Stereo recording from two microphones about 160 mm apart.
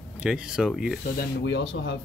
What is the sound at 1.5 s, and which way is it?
Speech, 90° left.